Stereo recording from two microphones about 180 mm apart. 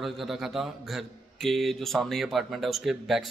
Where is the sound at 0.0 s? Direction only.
Centre (ahead or behind).